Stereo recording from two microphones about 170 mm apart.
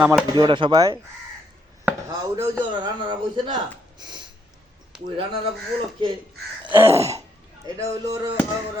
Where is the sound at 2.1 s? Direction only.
20° right (ahead or behind).